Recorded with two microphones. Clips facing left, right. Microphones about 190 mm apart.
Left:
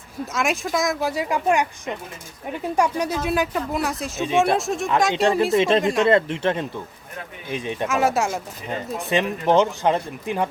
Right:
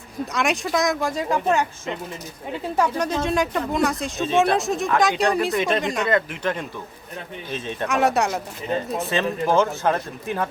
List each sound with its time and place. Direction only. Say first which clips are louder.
0.3 s speech: right 1 dB; centre (ahead or behind)
4.2 s speech: even; 15° left (ahead or behind)
4.5 s speech: even; centre (ahead or behind)
5.5 s speech: left 4 dB; 30° left (ahead or behind)
5.8 s speech: left 5 dB; centre (ahead or behind)
6.1 s speech: left 4 dB; 30° left (ahead or behind)
7.5 s speech: left 2 dB; 15° left (ahead or behind)
7.9 s speech: right 1 dB; centre (ahead or behind)
9.0 s speech: left 4 dB; 15° left (ahead or behind)